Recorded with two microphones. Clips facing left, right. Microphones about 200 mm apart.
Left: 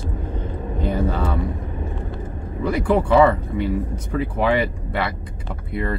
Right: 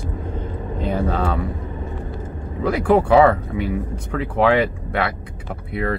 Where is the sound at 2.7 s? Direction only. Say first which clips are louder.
Right 3 dB; 70° right (ahead or behind).